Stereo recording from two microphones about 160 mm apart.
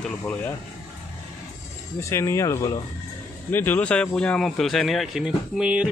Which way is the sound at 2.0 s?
15° left (ahead or behind).